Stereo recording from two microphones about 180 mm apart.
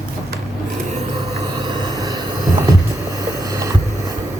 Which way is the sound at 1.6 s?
25° right (ahead or behind).